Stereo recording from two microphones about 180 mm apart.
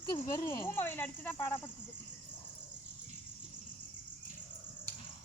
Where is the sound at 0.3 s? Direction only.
15° left (ahead or behind).